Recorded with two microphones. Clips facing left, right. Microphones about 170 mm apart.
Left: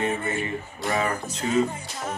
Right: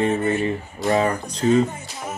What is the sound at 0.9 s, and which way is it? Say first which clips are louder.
Speech: right 6 dB; 30° right (ahead or behind).